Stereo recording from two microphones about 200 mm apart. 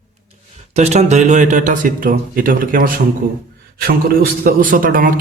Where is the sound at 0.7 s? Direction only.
30° right (ahead or behind).